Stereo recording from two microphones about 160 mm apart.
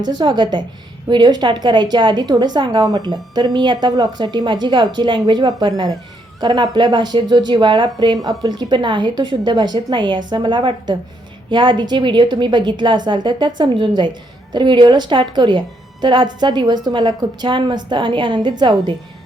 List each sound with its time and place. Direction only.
0.0 s a woman's voice: 30° right (ahead or behind)